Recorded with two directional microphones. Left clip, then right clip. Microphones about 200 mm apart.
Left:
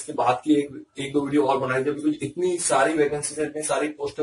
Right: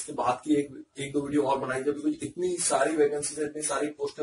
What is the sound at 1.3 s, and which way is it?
A man's voice, 10° right (ahead or behind).